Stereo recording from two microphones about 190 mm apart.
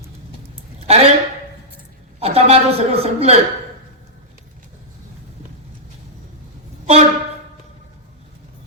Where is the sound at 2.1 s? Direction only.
35° right (ahead or behind).